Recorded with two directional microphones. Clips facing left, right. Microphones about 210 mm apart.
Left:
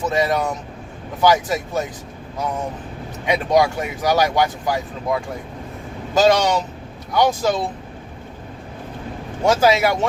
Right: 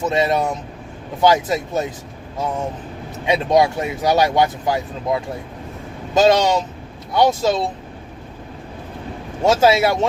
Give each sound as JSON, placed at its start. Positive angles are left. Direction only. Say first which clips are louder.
{"t": 0.1, "sound": "speech", "louder": "right 1 dB", "side_deg": -20}
{"t": 3.2, "sound": "speech", "louder": "right 1 dB", "side_deg": -25}
{"t": 9.4, "sound": "speech", "louder": "right 1 dB", "side_deg": -25}